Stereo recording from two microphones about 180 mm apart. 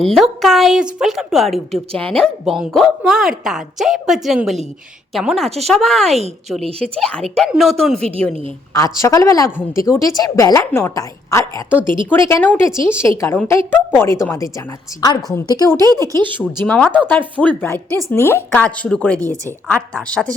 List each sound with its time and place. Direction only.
0.0 s a woman's voice: centre (ahead or behind)
8.7 s a woman's voice: 15° left (ahead or behind)
15.8 s speech: 20° right (ahead or behind)
16.6 s a woman's voice: 5° left (ahead or behind)